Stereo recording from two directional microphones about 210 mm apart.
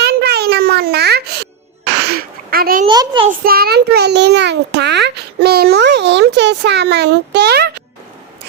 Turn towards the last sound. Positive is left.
turn(degrees=-50)  # may be behind; listen again after turning